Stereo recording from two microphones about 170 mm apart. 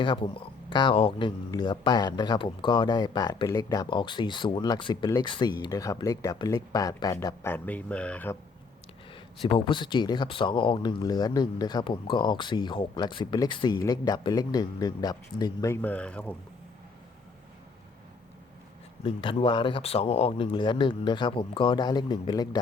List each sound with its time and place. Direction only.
0.0 s speech: 30° left (ahead or behind); by 8.4 s 10° left (ahead or behind)
9.4 s speech: 30° left (ahead or behind); by 16.3 s 10° left (ahead or behind)
19.0 s speech: 30° left (ahead or behind)